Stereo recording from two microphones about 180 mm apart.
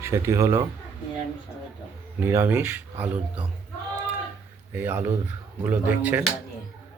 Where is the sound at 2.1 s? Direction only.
10° right (ahead or behind).